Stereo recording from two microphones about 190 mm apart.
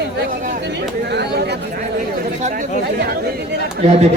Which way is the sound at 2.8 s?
60° right (ahead or behind).